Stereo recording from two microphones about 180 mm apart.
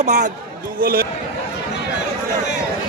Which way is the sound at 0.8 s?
55° right (ahead or behind).